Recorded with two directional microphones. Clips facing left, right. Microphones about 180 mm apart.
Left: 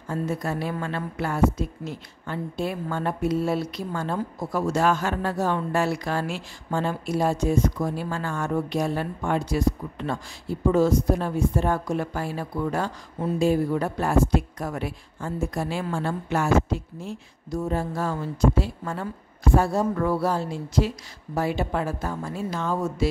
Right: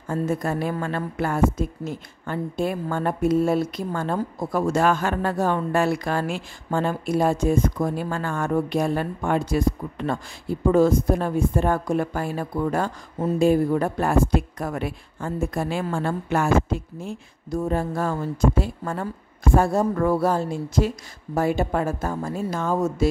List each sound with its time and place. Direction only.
0.1 s speech: 50° right (ahead or behind)